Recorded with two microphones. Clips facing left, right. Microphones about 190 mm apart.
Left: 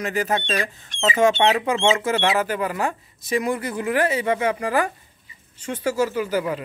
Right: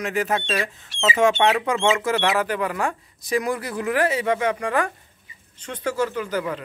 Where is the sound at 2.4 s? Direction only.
5° left (ahead or behind).